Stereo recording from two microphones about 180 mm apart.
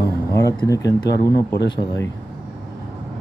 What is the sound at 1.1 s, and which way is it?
Speech, 70° left (ahead or behind).